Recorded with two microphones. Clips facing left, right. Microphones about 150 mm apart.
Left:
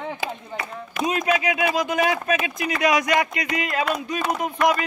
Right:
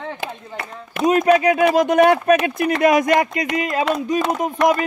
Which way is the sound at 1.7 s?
65° right (ahead or behind).